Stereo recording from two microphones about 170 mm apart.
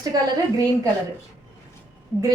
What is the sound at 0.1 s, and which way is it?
Speech, 20° right (ahead or behind).